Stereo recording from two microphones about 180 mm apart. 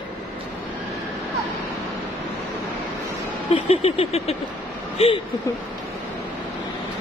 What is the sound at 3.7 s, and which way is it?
Vehicle, 35° left (ahead or behind).